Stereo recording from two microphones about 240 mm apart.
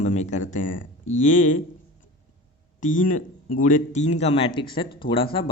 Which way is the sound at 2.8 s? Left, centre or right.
Left.